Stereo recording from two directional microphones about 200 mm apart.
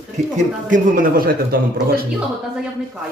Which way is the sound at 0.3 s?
40° right (ahead or behind).